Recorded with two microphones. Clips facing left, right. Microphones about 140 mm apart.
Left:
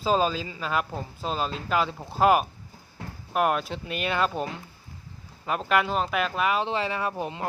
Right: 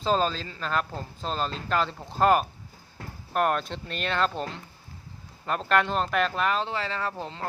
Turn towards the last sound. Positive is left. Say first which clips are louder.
# left 3 dB
turn(degrees=15)  # may be behind; listen again after turning